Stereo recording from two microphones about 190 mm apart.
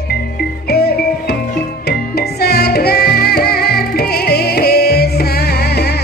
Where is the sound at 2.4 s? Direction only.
55° left (ahead or behind).